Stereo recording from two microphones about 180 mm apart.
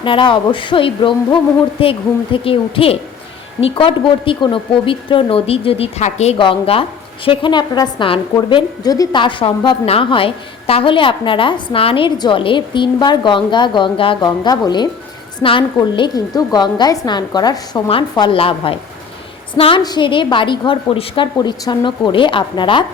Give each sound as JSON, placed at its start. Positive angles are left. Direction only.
{"t": 0.0, "sound": "a woman's voice", "side_deg": 25}